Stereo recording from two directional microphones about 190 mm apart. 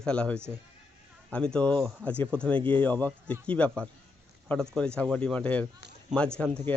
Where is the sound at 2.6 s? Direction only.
25° right (ahead or behind).